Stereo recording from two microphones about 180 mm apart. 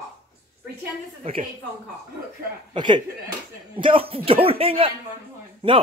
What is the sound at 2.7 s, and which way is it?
A man's voice, 25° right (ahead or behind).